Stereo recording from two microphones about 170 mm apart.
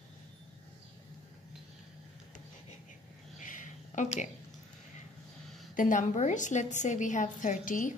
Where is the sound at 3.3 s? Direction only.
50° left (ahead or behind).